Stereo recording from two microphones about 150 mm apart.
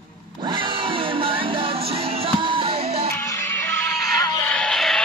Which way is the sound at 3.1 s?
20° left (ahead or behind).